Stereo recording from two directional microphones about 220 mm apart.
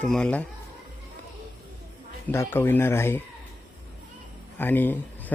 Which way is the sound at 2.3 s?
10° left (ahead or behind).